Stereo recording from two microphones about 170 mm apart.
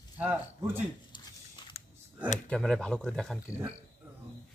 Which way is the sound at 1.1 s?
30° left (ahead or behind).